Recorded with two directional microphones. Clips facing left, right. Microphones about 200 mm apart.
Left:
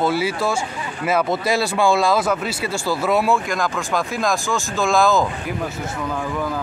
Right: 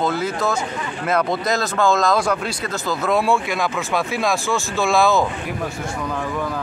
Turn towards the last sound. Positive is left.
turn(degrees=0)  # may be behind; listen again after turning